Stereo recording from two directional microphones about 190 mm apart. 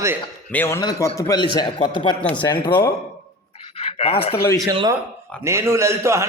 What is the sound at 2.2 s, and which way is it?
Speech, 10° left (ahead or behind).